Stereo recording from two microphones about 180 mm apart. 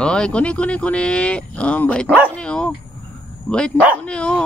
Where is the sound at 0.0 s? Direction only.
5° left (ahead or behind).